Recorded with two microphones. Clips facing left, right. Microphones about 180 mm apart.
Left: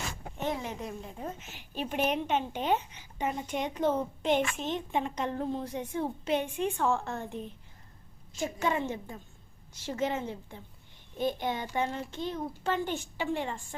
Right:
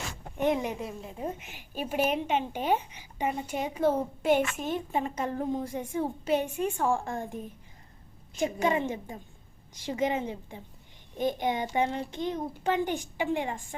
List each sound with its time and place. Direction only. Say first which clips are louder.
0.3 s a woman's voice: right 7 dB; 15° right (ahead or behind)
0.8 s a woman's voice: right 3 dB; 5° right (ahead or behind)